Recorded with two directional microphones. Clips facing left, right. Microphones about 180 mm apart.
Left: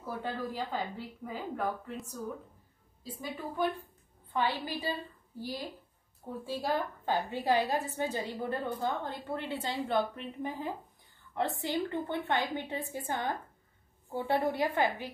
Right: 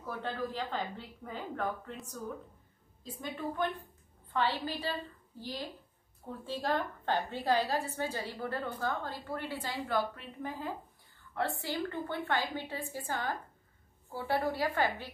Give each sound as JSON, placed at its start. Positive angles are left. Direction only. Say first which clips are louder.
{"t": 0.0, "sound": "a woman's voice", "louder": "left 1 dB", "side_deg": 10}